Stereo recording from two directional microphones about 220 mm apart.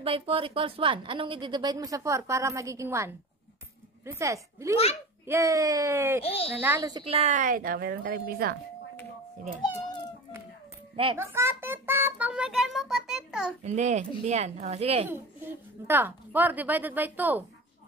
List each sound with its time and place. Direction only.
0.0 s a woman's voice: 25° right (ahead or behind)
6.2 s a woman's voice: 25° left (ahead or behind)
6.6 s a woman's voice: 10° right (ahead or behind); by 8.5 s 45° right (ahead or behind)
11.1 s a child's voice: 10° right (ahead or behind)
13.7 s a woman's voice: 30° right (ahead or behind)
15.0 s a woman's voice: 10° right (ahead or behind)